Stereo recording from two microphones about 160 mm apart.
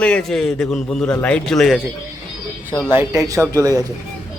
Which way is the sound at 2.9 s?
15° right (ahead or behind).